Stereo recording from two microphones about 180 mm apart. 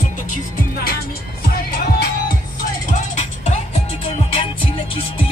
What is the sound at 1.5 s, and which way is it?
Music, 55° left (ahead or behind).